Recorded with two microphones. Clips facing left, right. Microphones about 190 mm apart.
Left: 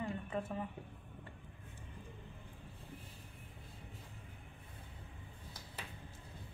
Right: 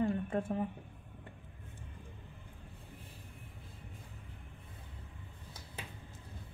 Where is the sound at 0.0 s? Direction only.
45° right (ahead or behind).